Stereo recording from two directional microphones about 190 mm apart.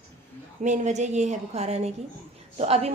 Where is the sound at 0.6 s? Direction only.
40° right (ahead or behind).